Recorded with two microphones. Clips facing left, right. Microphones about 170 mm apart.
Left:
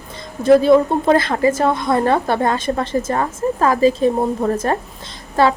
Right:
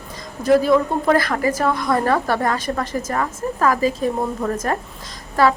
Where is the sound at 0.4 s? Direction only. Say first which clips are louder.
Left 4 dB; 25° left (ahead or behind).